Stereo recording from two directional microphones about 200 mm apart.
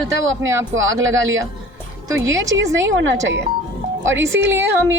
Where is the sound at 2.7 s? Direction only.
65° right (ahead or behind).